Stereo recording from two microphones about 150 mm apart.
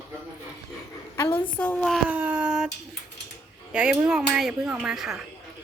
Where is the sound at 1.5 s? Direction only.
10° left (ahead or behind).